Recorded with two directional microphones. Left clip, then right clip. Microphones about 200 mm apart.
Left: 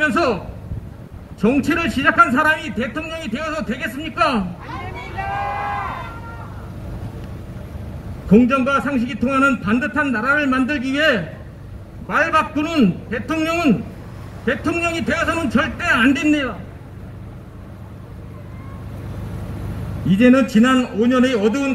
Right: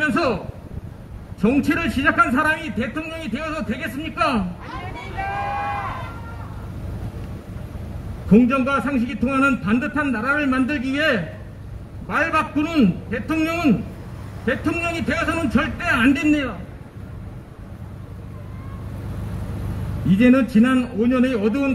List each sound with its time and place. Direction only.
0.0 s a man's voice: 30° left (ahead or behind)
1.4 s a man's voice: 30° left (ahead or behind)
8.3 s a man's voice: 30° left (ahead or behind)
20.1 s a man's voice: 30° left (ahead or behind)